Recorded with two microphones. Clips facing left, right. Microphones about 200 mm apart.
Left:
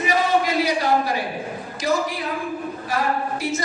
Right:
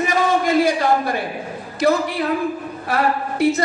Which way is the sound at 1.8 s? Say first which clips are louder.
Right 5 dB; 60° right (ahead or behind).